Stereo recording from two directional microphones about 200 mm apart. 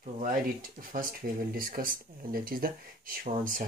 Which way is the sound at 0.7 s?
45° right (ahead or behind).